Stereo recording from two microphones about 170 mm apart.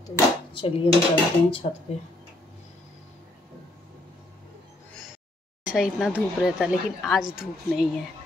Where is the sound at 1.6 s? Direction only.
40° left (ahead or behind).